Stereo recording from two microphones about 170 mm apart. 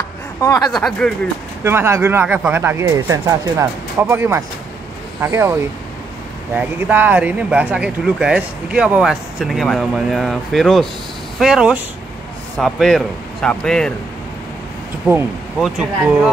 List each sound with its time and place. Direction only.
0.4 s speech: 20° left (ahead or behind)
0.7 s speech: 5° left (ahead or behind)
1.6 s speech: 15° right (ahead or behind); by 13.9 s 5° left (ahead or behind)
15.6 s speech: 5° right (ahead or behind)